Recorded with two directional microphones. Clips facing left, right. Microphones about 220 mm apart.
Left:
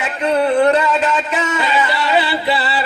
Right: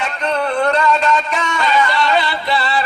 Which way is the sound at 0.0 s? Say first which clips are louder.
Left 3 dB; 10° left (ahead or behind).